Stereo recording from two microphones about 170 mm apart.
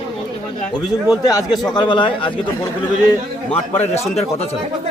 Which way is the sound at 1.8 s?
30° left (ahead or behind).